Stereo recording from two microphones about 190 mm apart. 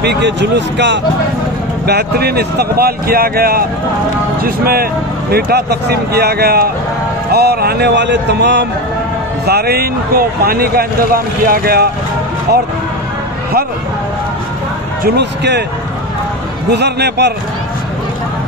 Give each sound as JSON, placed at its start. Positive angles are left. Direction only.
{"t": 0.0, "sound": "speech", "side_deg": -65}
{"t": 15.0, "sound": "speech", "side_deg": -65}
{"t": 16.7, "sound": "speech", "side_deg": -60}